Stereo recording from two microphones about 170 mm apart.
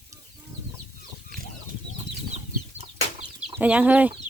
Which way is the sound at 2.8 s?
35° right (ahead or behind).